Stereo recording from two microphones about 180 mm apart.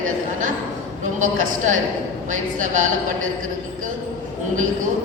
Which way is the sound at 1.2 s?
45° right (ahead or behind).